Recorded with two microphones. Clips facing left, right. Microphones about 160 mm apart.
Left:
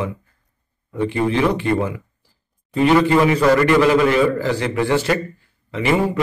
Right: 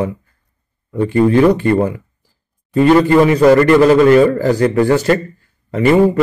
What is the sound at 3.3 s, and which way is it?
Mantra, 45° right (ahead or behind).